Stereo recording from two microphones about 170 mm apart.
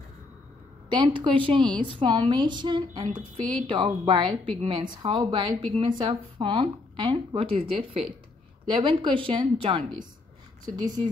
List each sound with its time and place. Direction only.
0.8 s a woman's voice: 30° right (ahead or behind)